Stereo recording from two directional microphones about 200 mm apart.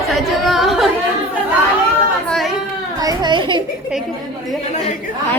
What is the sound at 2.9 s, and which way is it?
Speech, 20° right (ahead or behind).